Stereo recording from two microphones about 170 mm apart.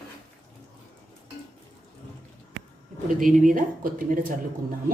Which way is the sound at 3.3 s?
50° right (ahead or behind).